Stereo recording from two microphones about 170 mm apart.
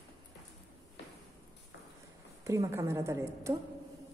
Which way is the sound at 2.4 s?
20° right (ahead or behind).